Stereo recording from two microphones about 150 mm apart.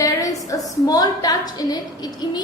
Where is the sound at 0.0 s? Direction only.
25° left (ahead or behind).